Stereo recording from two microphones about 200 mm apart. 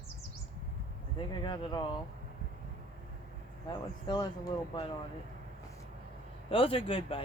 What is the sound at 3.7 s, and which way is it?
Speech, 20° left (ahead or behind).